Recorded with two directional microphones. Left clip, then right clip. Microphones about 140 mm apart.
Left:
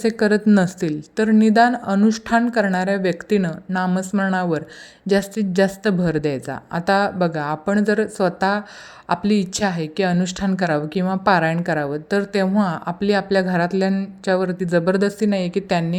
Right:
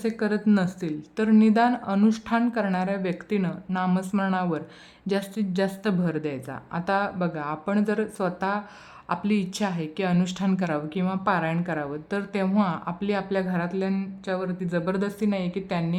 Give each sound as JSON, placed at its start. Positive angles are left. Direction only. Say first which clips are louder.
{"t": 0.0, "sound": "a woman's voice", "louder": "left 8 dB", "side_deg": 35}